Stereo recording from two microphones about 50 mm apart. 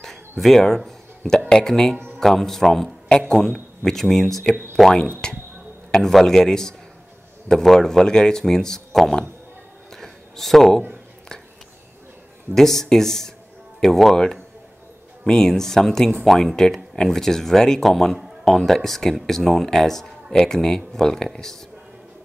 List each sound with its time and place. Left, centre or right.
0.4 s speech: centre
5.2 s speech: centre
9.9 s a sound: centre
12.5 s speech: centre